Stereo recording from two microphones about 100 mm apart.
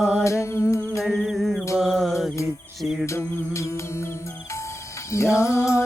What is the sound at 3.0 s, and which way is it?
Music, 25° left (ahead or behind).